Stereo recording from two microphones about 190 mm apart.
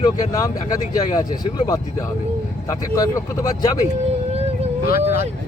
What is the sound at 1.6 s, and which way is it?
Speech, 15° left (ahead or behind).